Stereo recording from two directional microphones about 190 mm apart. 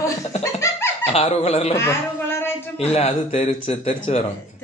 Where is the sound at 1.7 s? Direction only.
15° left (ahead or behind).